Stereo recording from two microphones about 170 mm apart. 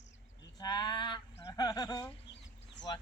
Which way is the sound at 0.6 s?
25° left (ahead or behind).